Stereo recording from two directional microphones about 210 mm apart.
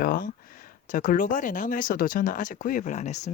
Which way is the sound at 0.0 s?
45° left (ahead or behind).